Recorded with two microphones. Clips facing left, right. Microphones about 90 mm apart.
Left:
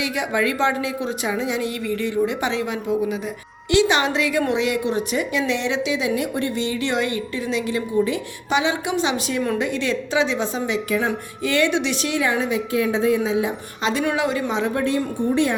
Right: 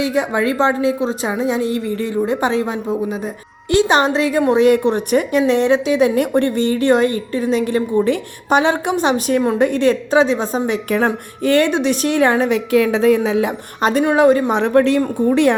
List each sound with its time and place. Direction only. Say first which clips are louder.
0.0 s a woman's voice: right 5 dB; 35° right (ahead or behind); by 5.4 s 55° right (ahead or behind)
5.5 s a woman's voice: right 8 dB; 45° right (ahead or behind); by 13.5 s 75° right (ahead or behind)
13.8 s a woman's voice: right 9 dB; 50° right (ahead or behind)
15.3 s a woman's voice: right 6 dB; 80° right